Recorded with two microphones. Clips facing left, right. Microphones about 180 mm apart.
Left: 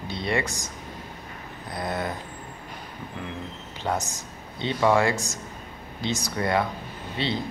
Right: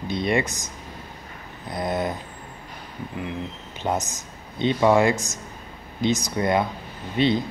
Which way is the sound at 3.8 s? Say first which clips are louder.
Right 2 dB; 20° right (ahead or behind).